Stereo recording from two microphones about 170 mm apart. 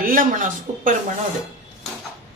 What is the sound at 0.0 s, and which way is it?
Speech, 55° right (ahead or behind).